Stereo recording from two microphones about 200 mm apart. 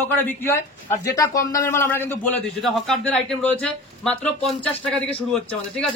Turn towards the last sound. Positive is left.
turn(degrees=5)  # may be behind; listen again after turning